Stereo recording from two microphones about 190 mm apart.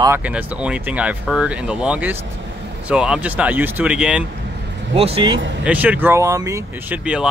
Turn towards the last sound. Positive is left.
turn(degrees=-10)  # may be behind; listen again after turning